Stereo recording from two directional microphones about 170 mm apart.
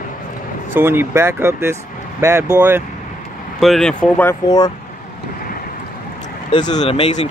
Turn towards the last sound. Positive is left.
turn(degrees=35)  # may be behind; listen again after turning